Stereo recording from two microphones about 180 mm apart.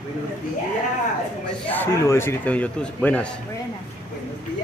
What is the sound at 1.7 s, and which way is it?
A man's voice, 15° left (ahead or behind).